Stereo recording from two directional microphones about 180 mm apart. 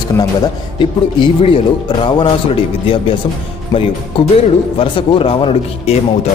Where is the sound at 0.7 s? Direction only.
30° left (ahead or behind).